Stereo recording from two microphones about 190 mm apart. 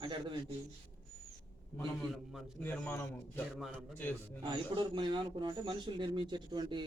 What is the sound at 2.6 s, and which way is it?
A man's voice, 10° left (ahead or behind).